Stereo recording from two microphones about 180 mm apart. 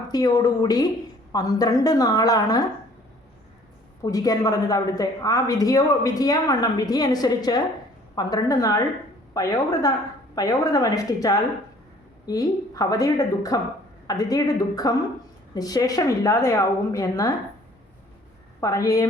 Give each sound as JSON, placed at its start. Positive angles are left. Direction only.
{"t": 0.1, "sound": "a woman's voice", "side_deg": 20}
{"t": 4.0, "sound": "a woman's voice", "side_deg": 20}
{"t": 18.6, "sound": "a woman's voice", "side_deg": 20}